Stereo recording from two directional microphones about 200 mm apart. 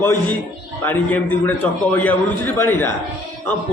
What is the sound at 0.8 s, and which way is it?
A man's voice, 10° left (ahead or behind).